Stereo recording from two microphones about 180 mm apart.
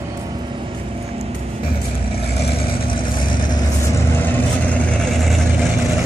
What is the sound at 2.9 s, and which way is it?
Vehicle, 25° left (ahead or behind).